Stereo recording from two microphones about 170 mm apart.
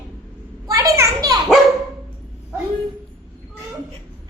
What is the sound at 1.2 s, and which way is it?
Dog, 20° right (ahead or behind).